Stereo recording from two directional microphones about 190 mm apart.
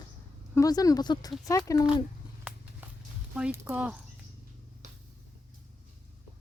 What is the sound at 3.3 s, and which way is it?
Speech, 10° right (ahead or behind).